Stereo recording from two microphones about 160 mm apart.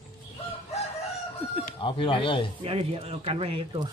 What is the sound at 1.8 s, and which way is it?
Speech, 30° left (ahead or behind).